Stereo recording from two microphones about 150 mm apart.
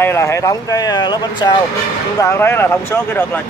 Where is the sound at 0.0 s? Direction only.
20° left (ahead or behind).